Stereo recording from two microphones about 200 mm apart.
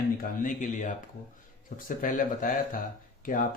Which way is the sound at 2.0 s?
40° left (ahead or behind).